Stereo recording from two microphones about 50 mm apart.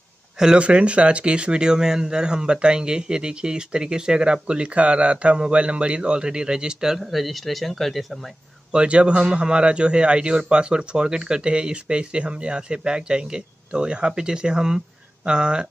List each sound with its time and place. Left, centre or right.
0.4 s speech: centre
8.7 s a man's voice: right